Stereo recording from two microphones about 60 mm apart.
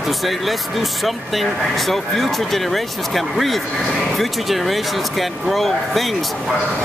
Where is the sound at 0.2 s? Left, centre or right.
Centre.